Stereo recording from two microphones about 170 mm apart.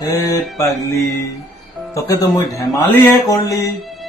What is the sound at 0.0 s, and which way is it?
Mantra, 20° left (ahead or behind).